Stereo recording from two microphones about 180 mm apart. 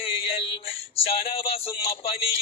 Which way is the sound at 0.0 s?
30° left (ahead or behind).